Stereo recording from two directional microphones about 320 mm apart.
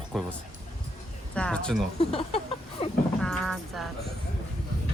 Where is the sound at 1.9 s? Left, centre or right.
Centre.